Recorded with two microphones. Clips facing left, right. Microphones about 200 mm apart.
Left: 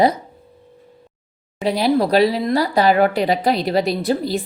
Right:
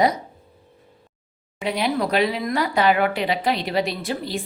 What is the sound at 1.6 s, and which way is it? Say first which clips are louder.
Speech: left 6 dB; 35° left (ahead or behind).